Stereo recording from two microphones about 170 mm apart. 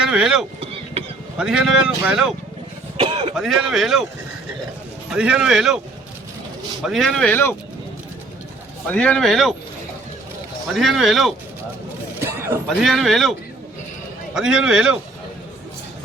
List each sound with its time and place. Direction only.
0.0 s speech: 5° right (ahead or behind)
3.0 s cough: 35° right (ahead or behind)
3.3 s speech: centre (ahead or behind)
5.1 s speech: 5° right (ahead or behind)
6.8 s speech: centre (ahead or behind)
8.9 s speech: 5° left (ahead or behind)
10.8 s speech: centre (ahead or behind)
12.2 s a sound: 15° right (ahead or behind)
12.6 s speech: centre (ahead or behind)
14.3 s speech: 5° right (ahead or behind)